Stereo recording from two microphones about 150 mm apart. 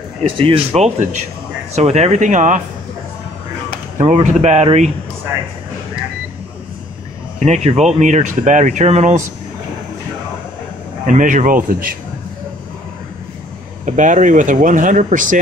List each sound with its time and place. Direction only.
0.4 s speech: 40° right (ahead or behind)
4.0 s speech: 50° right (ahead or behind)
7.3 s speech: 50° right (ahead or behind)
11.1 s speech: 60° right (ahead or behind)
13.8 s speech: 55° right (ahead or behind)